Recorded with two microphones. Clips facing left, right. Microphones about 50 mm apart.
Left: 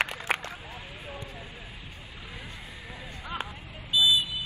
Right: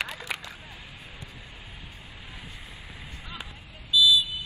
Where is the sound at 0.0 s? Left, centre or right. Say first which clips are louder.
Left 4 dB; left.